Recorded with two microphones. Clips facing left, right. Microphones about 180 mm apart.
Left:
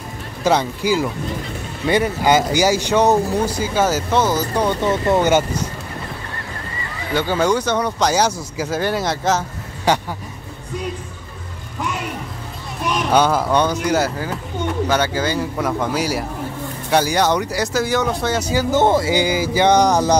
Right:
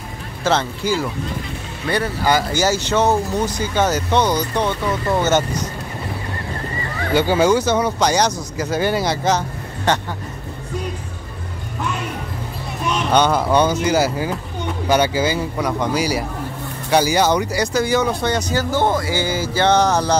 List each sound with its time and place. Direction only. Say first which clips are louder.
0.4 s speech: left 2 dB; 15° left (ahead or behind)
4.8 s speech: left 3 dB; 25° left (ahead or behind)
5.2 s speech: left 2 dB; 10° left (ahead or behind)
7.2 s speech: right 3 dB; 10° right (ahead or behind); by 10.0 s 10° left (ahead or behind)
13.1 s speech: even; 5° left (ahead or behind)
15.6 s speech: right 1 dB; centre (ahead or behind)